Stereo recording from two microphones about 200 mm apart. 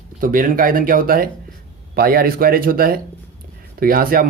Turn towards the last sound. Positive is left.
turn(degrees=-45)  # may be behind; listen again after turning